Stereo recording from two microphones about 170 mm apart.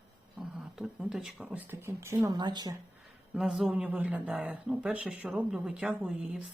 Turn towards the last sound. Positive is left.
turn(degrees=-5)  # may be behind; listen again after turning